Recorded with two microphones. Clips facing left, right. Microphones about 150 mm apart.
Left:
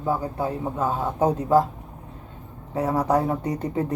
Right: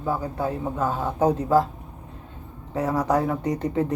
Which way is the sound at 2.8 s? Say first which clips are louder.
Left 1 dB; 10° left (ahead or behind).